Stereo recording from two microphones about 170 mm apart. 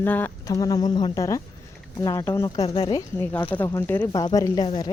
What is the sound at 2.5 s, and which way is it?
Speech, 35° left (ahead or behind).